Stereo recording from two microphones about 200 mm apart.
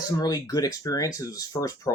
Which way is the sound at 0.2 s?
20° left (ahead or behind).